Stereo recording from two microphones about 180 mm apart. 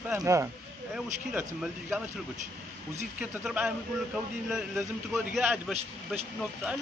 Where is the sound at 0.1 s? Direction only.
15° right (ahead or behind).